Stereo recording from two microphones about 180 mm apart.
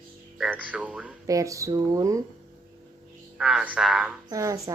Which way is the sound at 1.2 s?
20° right (ahead or behind).